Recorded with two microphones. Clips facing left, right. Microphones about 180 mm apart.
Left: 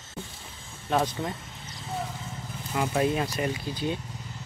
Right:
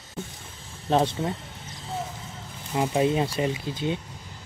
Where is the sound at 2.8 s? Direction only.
20° right (ahead or behind).